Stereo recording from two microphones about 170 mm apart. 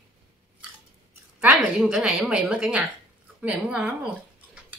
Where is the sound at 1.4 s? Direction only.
5° right (ahead or behind).